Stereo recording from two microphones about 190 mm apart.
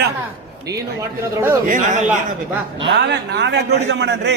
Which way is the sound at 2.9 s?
60° right (ahead or behind).